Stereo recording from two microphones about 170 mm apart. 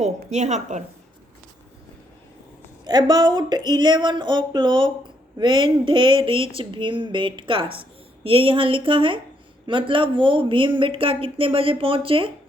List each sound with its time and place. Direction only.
0.0 s a woman's voice: 40° right (ahead or behind)
2.8 s a woman's voice: 25° right (ahead or behind)